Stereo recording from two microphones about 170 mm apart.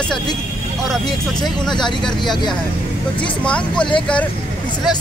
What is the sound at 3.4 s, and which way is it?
Speech, 5° left (ahead or behind).